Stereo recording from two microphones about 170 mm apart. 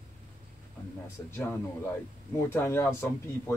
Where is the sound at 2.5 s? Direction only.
15° left (ahead or behind).